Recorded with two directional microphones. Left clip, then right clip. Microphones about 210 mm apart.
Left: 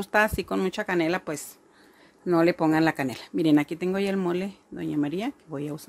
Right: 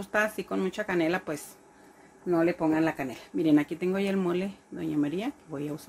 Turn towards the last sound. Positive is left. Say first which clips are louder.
# left 2 dB
turn(degrees=25)  # may be behind; listen again after turning